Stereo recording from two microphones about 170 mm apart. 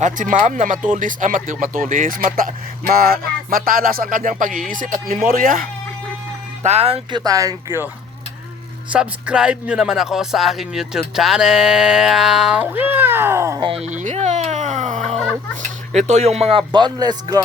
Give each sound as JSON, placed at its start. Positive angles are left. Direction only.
{"t": 0.0, "sound": "speech", "side_deg": -50}
{"t": 6.6, "sound": "speech", "side_deg": -40}
{"t": 7.2, "sound": "speech", "side_deg": -20}
{"t": 8.9, "sound": "a sound", "side_deg": -5}
{"t": 13.6, "sound": "a sound", "side_deg": -35}
{"t": 16.0, "sound": "speech", "side_deg": -40}